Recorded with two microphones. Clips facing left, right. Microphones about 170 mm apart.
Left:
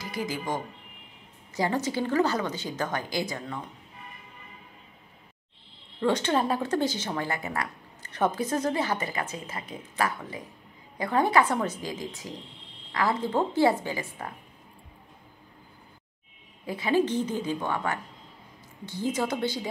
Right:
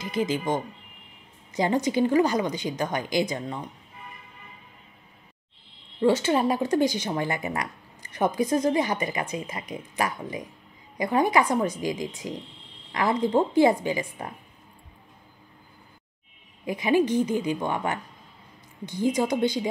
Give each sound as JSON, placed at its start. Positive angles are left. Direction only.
{"t": 0.0, "sound": "speech", "side_deg": -20}
{"t": 5.9, "sound": "speech", "side_deg": -10}
{"t": 16.6, "sound": "speech", "side_deg": -15}